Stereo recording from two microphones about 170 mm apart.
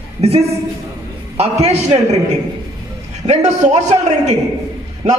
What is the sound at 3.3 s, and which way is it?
A woman's voice, 45° right (ahead or behind).